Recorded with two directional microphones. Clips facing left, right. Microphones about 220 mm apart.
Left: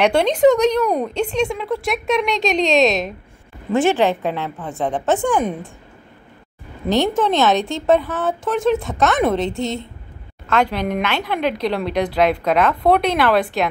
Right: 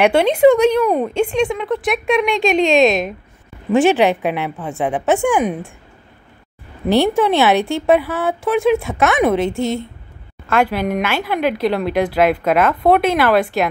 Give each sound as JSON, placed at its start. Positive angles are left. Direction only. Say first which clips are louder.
{"t": 0.0, "sound": "speech", "louder": "right 2 dB", "side_deg": -5}
{"t": 3.7, "sound": "a woman's voice", "louder": "right 3 dB", "side_deg": -15}
{"t": 6.9, "sound": "a woman's voice", "louder": "right 3 dB", "side_deg": -10}
{"t": 9.4, "sound": "a woman's voice", "louder": "right 3 dB", "side_deg": 20}
{"t": 10.5, "sound": "speech", "louder": "right 2 dB", "side_deg": -5}